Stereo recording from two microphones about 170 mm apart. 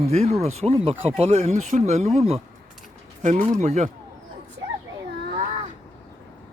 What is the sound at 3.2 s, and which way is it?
Speech, 50° right (ahead or behind).